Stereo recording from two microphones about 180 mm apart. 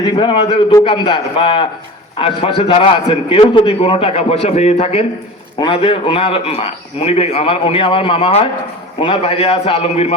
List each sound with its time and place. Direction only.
0.0 s a man's voice: 25° left (ahead or behind)